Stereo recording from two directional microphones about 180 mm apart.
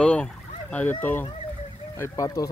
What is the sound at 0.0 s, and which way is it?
Speech, 5° left (ahead or behind).